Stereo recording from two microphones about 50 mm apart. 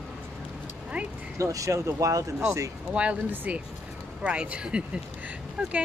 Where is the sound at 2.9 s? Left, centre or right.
Right.